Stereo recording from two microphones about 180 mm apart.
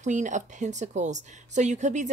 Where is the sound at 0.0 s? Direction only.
45° right (ahead or behind).